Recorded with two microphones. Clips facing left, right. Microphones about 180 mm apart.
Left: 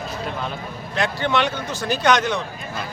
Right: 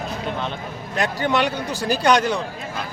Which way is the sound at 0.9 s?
40° right (ahead or behind).